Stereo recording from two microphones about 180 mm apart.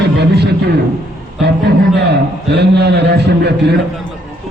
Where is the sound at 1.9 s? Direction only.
70° right (ahead or behind).